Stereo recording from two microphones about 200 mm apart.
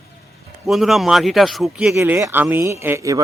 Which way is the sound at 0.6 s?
Centre (ahead or behind).